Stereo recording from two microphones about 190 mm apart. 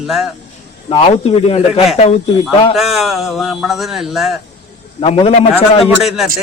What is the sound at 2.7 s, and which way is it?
Speech, centre (ahead or behind).